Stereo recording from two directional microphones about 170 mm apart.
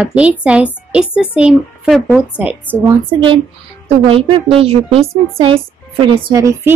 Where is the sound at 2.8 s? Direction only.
30° right (ahead or behind).